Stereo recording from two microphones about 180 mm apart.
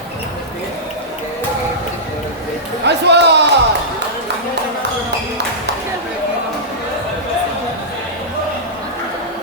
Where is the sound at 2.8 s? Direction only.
70° right (ahead or behind).